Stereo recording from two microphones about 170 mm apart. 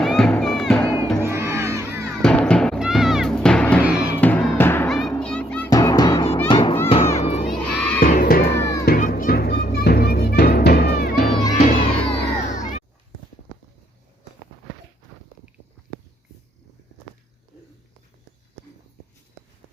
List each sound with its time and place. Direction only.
0.0 s music: centre (ahead or behind)
1.2 s crowd: 15° right (ahead or behind)
2.2 s music: 5° left (ahead or behind)
3.8 s music: 5° right (ahead or behind)
4.2 s music: 10° left (ahead or behind)
4.9 s music: centre (ahead or behind)
5.7 s music: 20° left (ahead or behind)
6.5 s children playing: 30° left (ahead or behind)
7.2 s crowd: 40° left (ahead or behind)
7.7 s crowd: 5° left (ahead or behind)
7.9 s crowd: 60° left (ahead or behind)
8.8 s music: 60° left (ahead or behind)
11.5 s crowd: 35° left (ahead or behind)